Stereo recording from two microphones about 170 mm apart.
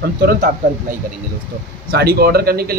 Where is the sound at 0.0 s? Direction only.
60° right (ahead or behind).